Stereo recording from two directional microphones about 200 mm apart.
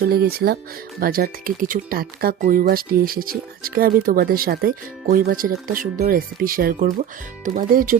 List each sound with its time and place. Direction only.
0.1 s speech: 50° right (ahead or behind)